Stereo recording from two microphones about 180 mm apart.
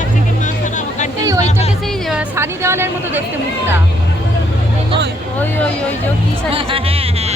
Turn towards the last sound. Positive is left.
turn(degrees=-30)  # may be behind; listen again after turning